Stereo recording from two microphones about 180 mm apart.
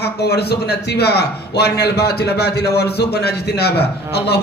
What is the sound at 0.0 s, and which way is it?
A man's voice, 65° left (ahead or behind).